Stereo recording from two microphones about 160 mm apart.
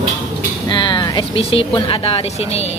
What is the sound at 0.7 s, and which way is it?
Speech, 30° left (ahead or behind).